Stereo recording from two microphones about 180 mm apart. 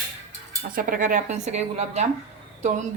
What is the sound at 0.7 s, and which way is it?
A woman's voice, 50° right (ahead or behind).